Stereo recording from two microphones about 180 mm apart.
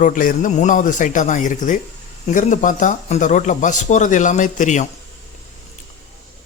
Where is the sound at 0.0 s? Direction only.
45° left (ahead or behind).